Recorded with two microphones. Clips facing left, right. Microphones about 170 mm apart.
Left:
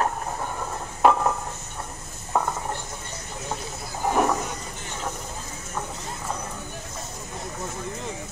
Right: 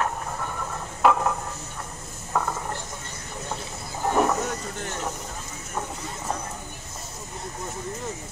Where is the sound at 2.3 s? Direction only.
20° left (ahead or behind).